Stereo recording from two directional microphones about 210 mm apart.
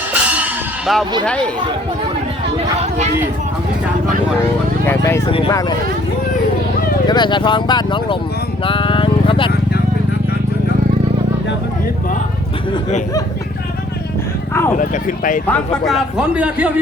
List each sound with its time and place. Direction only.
0.1 s music: 5° right (ahead or behind)
1.2 s a man's voice: 5° left (ahead or behind)
4.9 s speech: 10° left (ahead or behind)
7.1 s speech: 20° left (ahead or behind)
8.6 s vehicle: 25° left (ahead or behind)
14.8 s speech: 40° left (ahead or behind)
15.4 s a man's voice: 5° left (ahead or behind)